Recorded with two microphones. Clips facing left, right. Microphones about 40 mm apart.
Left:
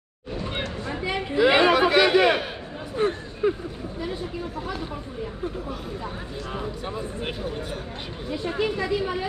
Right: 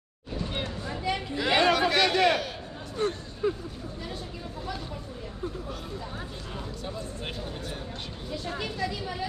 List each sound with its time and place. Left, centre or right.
0.6 s a sound: left
3.0 s speech: left
6.5 s speech: left
8.3 s speech: centre